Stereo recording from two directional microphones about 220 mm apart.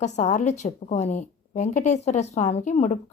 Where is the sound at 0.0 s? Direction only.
35° left (ahead or behind).